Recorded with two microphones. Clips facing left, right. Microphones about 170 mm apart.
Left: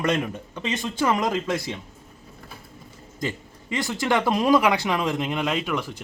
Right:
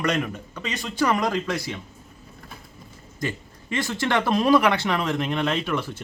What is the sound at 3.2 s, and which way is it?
Speech, 15° left (ahead or behind).